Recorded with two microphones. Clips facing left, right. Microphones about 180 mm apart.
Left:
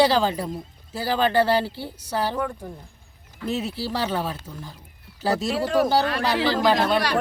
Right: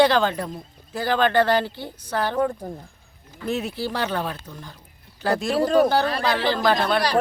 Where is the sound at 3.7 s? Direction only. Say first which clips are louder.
Even; 5° left (ahead or behind).